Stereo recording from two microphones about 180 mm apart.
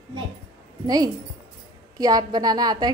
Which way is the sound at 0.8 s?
20° right (ahead or behind).